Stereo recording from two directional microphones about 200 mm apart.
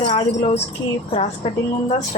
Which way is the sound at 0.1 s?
30° left (ahead or behind).